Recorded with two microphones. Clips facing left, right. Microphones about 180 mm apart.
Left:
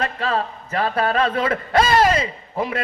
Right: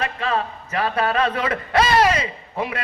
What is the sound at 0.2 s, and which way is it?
A man's voice, 35° left (ahead or behind).